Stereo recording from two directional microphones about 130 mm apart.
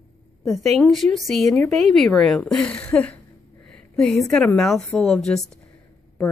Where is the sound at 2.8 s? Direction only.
10° left (ahead or behind).